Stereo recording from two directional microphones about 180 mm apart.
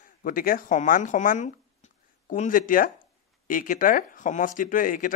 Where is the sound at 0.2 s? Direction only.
50° left (ahead or behind).